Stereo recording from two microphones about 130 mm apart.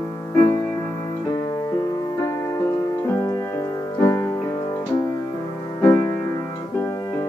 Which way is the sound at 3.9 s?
20° left (ahead or behind).